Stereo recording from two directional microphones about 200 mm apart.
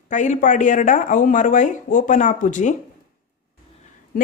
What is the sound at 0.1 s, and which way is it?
Speech, 40° left (ahead or behind).